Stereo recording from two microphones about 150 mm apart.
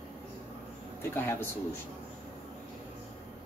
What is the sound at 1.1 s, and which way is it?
Speech, 15° left (ahead or behind).